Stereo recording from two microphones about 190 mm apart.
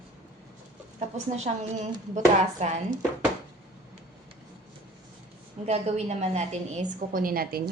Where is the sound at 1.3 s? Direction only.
40° right (ahead or behind).